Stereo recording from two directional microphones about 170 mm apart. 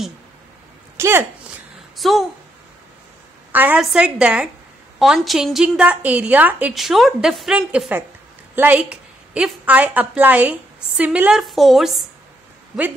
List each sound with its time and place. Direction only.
0.9 s speech: 15° right (ahead or behind)
2.0 s a woman's voice: centre (ahead or behind)
3.5 s a woman's voice: 10° right (ahead or behind)